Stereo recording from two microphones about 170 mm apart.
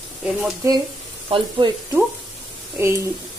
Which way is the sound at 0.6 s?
15° right (ahead or behind).